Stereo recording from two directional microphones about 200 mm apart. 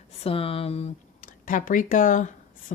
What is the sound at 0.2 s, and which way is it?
Speech, 30° left (ahead or behind).